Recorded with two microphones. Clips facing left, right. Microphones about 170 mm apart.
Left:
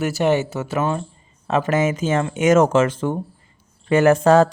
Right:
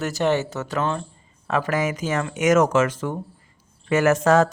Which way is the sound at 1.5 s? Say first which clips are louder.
Left 4 dB; 25° left (ahead or behind).